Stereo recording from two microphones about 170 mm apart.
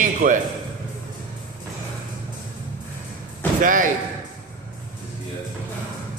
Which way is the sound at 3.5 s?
50° right (ahead or behind).